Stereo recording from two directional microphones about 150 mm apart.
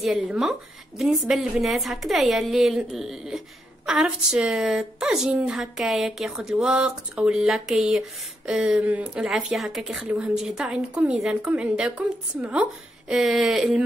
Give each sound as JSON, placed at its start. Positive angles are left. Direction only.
{"t": 0.0, "sound": "a woman's voice", "side_deg": 0}